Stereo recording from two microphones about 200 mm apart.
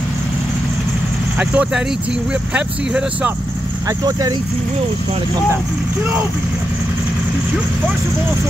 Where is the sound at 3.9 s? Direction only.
15° right (ahead or behind).